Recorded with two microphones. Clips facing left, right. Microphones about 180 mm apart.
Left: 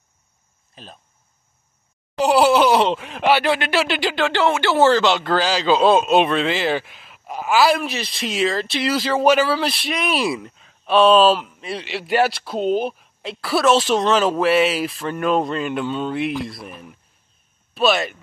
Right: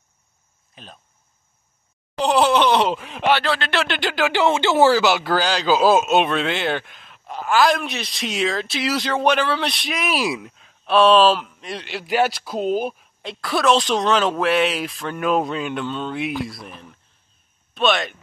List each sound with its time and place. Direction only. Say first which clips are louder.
0.8 s speech: left 2 dB; centre (ahead or behind)
2.1 s groan: left 2 dB; 10° left (ahead or behind)
3.0 s speech: left 2 dB; 5° left (ahead or behind)
4.3 s speech: right 2 dB; 15° right (ahead or behind); by 18.1 s 5° left (ahead or behind)